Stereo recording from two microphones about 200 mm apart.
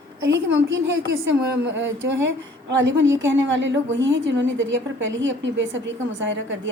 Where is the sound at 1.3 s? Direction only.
65° right (ahead or behind).